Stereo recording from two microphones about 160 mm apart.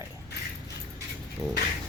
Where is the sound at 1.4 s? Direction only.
25° right (ahead or behind).